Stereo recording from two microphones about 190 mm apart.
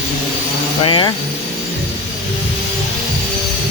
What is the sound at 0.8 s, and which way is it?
Speech, 25° left (ahead or behind).